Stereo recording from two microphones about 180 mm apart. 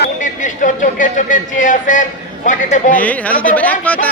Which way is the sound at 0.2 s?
45° left (ahead or behind).